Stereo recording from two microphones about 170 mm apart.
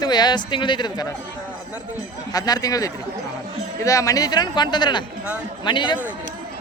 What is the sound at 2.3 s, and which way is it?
Speech, 20° left (ahead or behind).